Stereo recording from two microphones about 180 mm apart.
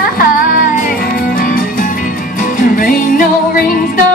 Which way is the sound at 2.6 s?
50° left (ahead or behind).